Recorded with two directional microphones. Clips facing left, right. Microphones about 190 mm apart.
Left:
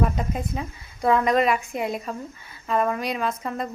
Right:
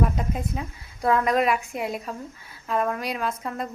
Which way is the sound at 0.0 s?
Centre (ahead or behind).